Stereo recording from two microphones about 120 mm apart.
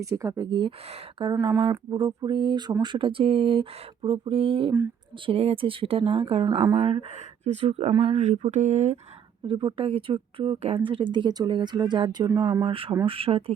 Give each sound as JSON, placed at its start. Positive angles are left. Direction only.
{"t": 0.0, "sound": "speech", "side_deg": -25}
{"t": 0.9, "sound": "speech", "side_deg": -55}
{"t": 1.3, "sound": "a sound", "side_deg": -35}
{"t": 2.8, "sound": "speech", "side_deg": -45}
{"t": 7.1, "sound": "speech", "side_deg": -70}
{"t": 8.1, "sound": "speech", "side_deg": -75}
{"t": 9.5, "sound": "speech", "side_deg": -45}